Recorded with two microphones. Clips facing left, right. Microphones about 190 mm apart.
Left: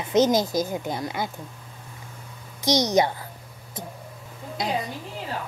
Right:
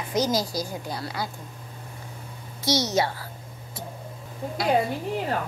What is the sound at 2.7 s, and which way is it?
Speech, 15° left (ahead or behind).